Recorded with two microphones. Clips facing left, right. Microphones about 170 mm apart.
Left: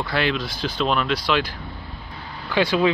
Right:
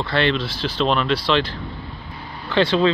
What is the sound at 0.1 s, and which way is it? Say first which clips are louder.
Speech: right 4 dB; 5° left (ahead or behind).